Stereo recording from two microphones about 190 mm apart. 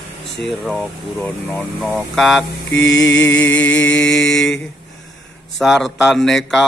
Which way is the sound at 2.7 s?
70° left (ahead or behind).